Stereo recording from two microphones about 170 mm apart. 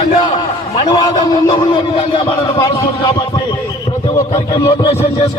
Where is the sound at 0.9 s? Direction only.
25° left (ahead or behind).